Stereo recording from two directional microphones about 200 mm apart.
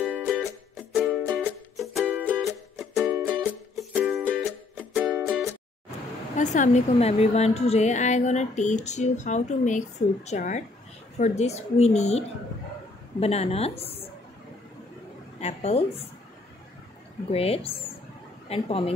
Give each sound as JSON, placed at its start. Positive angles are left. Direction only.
{"t": 0.2, "sound": "music", "side_deg": 0}
{"t": 6.3, "sound": "a woman's voice", "side_deg": 40}
{"t": 15.4, "sound": "a woman's voice", "side_deg": 30}
{"t": 17.3, "sound": "a woman's voice", "side_deg": 30}